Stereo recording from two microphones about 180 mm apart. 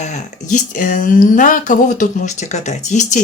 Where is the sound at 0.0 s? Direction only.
40° left (ahead or behind).